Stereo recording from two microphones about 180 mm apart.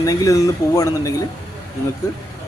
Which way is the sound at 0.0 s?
20° left (ahead or behind).